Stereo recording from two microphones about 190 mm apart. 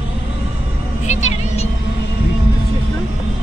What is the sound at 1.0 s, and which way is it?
Vehicle, 35° left (ahead or behind).